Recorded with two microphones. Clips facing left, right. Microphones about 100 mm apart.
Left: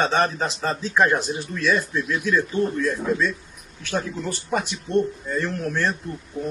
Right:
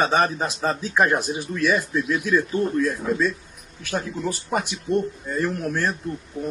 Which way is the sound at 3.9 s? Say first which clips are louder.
Even; 5° right (ahead or behind).